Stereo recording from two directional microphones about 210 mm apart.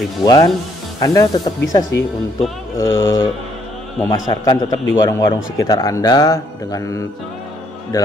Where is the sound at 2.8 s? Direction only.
15° left (ahead or behind).